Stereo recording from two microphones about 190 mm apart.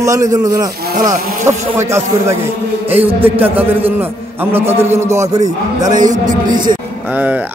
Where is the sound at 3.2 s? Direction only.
10° right (ahead or behind).